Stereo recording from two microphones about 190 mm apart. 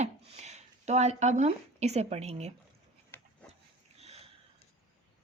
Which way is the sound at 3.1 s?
10° left (ahead or behind).